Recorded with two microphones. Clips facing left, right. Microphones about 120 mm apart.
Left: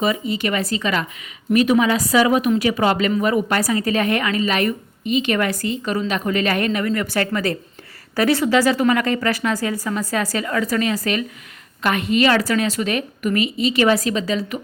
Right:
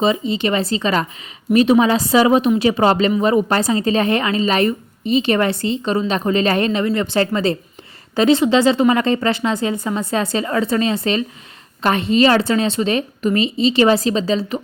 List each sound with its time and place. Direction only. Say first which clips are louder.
0.0 s speech: right 3 dB; 25° right (ahead or behind)